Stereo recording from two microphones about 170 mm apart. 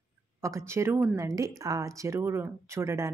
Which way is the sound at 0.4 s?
15° right (ahead or behind).